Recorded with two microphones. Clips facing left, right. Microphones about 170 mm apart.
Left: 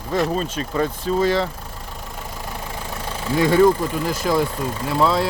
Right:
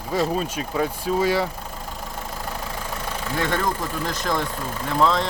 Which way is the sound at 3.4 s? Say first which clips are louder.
Left 10 dB; 10° left (ahead or behind).